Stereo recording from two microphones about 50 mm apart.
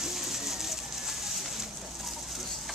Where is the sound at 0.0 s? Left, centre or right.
Centre.